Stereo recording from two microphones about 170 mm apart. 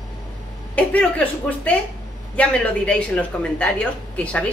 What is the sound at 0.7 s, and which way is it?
Speech, 10° left (ahead or behind).